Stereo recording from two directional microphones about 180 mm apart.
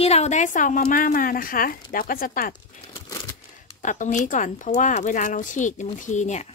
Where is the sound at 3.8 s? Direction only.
45° left (ahead or behind).